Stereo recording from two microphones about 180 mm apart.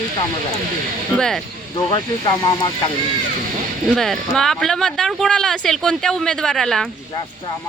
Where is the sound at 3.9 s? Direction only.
Centre (ahead or behind).